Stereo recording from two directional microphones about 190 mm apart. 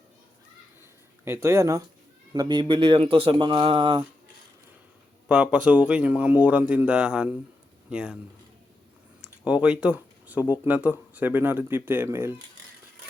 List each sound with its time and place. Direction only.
1.2 s speech: 15° right (ahead or behind)
5.3 s speech: 5° right (ahead or behind)
9.2 s a sound: 5° right (ahead or behind)
10.6 s speech: 10° right (ahead or behind)